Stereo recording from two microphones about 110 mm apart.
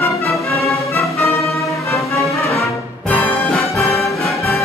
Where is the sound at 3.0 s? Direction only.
15° left (ahead or behind).